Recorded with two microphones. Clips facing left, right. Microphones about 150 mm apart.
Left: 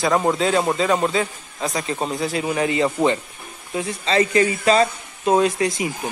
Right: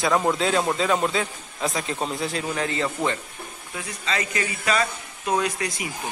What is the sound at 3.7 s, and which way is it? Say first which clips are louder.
Speech: left 9 dB; 30° left (ahead or behind).